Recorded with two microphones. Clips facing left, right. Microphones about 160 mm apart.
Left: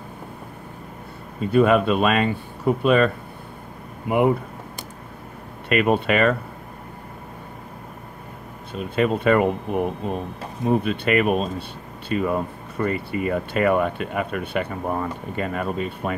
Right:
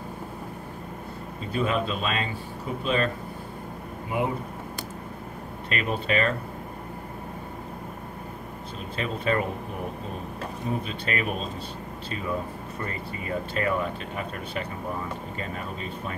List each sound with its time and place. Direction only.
1.5 s speech: 60° left (ahead or behind)
5.7 s speech: 65° left (ahead or behind)
8.7 s speech: 60° left (ahead or behind)